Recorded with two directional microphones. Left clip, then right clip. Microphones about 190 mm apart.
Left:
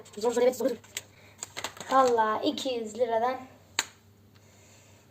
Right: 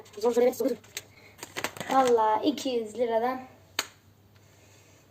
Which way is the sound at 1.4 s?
40° right (ahead or behind).